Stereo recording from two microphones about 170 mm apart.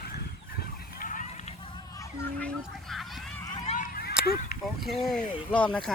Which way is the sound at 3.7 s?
55° left (ahead or behind).